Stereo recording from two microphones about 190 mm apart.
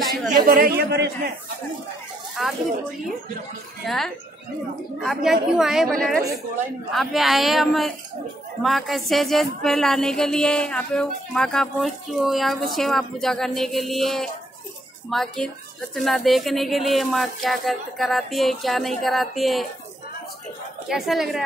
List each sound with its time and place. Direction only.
0.5 s speech: 55° right (ahead or behind)
2.4 s music: centre (ahead or behind)
3.8 s music: centre (ahead or behind)
20.9 s music: centre (ahead or behind)